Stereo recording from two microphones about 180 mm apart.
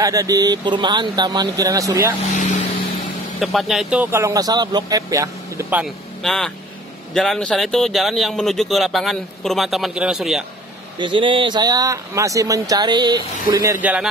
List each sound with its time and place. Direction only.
0.0 s speech: 20° right (ahead or behind)
3.3 s speech: centre (ahead or behind)
11.0 s speech: 25° right (ahead or behind); by 14.0 s 10° right (ahead or behind)